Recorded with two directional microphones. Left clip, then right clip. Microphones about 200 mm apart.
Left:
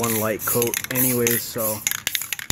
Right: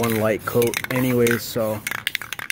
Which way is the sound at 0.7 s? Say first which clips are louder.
Right 2 dB; 25° right (ahead or behind).